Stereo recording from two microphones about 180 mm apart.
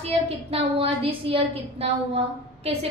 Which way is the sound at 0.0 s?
35° right (ahead or behind).